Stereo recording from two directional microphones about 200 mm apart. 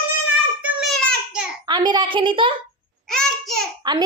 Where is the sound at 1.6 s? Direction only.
20° right (ahead or behind).